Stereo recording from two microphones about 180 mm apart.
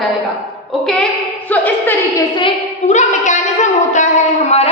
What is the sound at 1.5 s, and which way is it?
Speech, 10° left (ahead or behind).